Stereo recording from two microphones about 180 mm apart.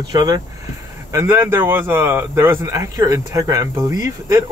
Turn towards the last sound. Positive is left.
turn(degrees=-20)  # may be behind; listen again after turning